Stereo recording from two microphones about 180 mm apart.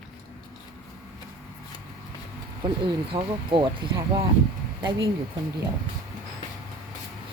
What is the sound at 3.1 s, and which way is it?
Speech, 25° right (ahead or behind).